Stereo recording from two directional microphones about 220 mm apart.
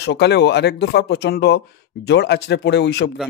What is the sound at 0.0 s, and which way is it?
Speech, 50° left (ahead or behind).